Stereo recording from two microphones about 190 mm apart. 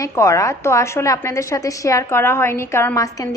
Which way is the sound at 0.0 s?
15° left (ahead or behind).